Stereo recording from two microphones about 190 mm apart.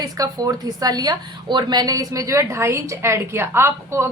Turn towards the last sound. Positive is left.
turn(degrees=-15)  # may be behind; listen again after turning